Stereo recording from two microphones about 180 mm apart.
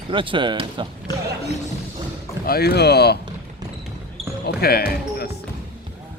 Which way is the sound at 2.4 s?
60° left (ahead or behind).